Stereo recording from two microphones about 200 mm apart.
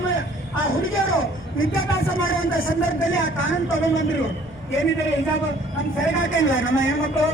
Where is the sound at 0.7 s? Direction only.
80° left.